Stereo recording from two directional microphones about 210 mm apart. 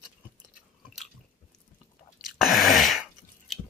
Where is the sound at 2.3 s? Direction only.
Centre (ahead or behind).